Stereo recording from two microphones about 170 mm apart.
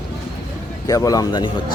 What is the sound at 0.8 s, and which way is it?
Speech, 20° left (ahead or behind).